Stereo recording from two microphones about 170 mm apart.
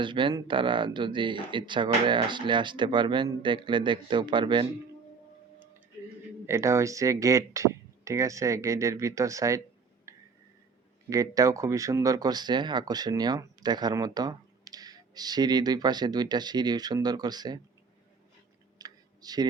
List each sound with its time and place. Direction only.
0.0 s speech: 30° right (ahead or behind)
6.4 s speech: 15° right (ahead or behind)
10.1 s a sound: 20° right (ahead or behind)
11.1 s speech: 20° right (ahead or behind)
18.8 s clicking: 25° right (ahead or behind)